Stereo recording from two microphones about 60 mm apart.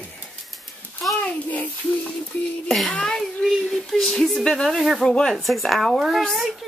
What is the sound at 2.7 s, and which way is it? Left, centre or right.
Speech, centre.